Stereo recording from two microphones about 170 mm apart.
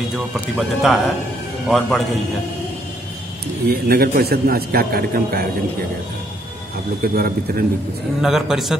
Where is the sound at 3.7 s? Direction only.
65° right (ahead or behind).